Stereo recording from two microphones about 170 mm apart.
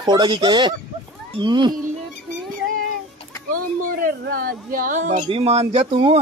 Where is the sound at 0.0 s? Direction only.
25° right (ahead or behind).